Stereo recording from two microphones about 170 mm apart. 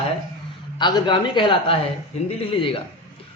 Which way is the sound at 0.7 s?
25° left (ahead or behind).